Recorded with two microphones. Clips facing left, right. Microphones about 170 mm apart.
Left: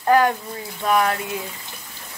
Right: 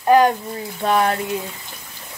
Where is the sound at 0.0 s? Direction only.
20° right (ahead or behind).